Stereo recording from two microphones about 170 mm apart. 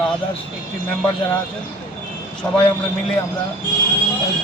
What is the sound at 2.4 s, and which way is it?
Speech, 5° left (ahead or behind).